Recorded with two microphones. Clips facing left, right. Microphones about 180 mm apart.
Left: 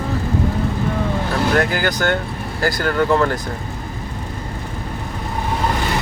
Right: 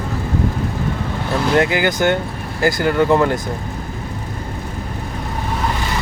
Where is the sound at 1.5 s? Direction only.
20° right (ahead or behind).